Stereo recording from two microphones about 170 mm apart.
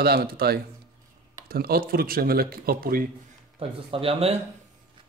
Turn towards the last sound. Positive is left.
turn(degrees=-35)  # may be behind; listen again after turning